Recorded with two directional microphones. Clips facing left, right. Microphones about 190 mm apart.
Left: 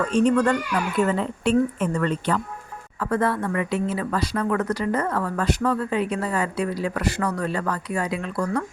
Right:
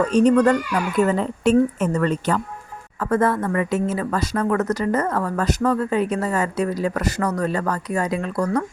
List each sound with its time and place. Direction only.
0.1 s speech: 40° right (ahead or behind)